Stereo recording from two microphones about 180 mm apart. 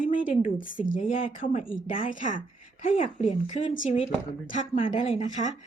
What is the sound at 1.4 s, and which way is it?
Speech, 50° left (ahead or behind).